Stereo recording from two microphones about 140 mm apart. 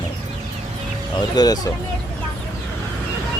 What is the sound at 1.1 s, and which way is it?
Speech, 30° left (ahead or behind).